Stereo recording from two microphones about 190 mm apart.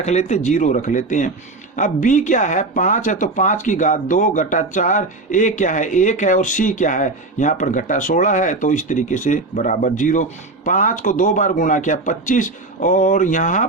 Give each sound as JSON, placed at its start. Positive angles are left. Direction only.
{"t": 0.0, "sound": "speech", "side_deg": 35}